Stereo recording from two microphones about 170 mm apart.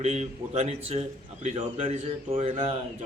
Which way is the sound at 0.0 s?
40° right (ahead or behind).